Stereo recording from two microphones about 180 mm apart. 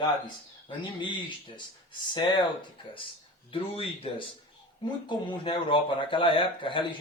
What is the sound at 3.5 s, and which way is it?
A man's voice, 30° left (ahead or behind).